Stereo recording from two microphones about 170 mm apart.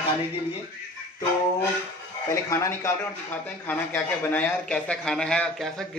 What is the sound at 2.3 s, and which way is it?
A man's voice, 15° left (ahead or behind).